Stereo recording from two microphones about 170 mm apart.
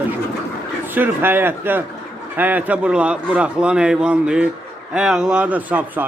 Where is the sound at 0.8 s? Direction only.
10° right (ahead or behind).